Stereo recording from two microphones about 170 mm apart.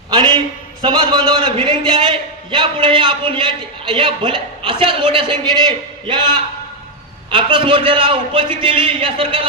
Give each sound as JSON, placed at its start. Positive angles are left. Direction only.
{"t": 0.1, "sound": "a man's voice", "side_deg": -30}